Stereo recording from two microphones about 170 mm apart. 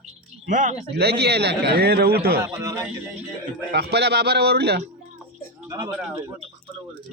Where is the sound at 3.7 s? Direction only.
75° right (ahead or behind).